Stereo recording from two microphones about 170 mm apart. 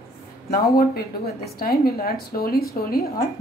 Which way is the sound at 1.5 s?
60° left (ahead or behind).